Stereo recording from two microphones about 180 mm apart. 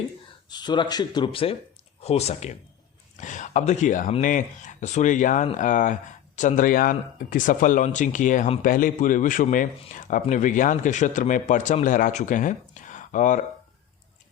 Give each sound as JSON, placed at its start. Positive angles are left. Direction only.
{"t": 0.5, "sound": "speech", "side_deg": 25}